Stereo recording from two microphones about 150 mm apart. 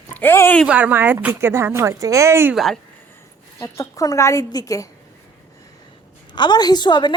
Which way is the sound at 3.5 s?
20° left (ahead or behind).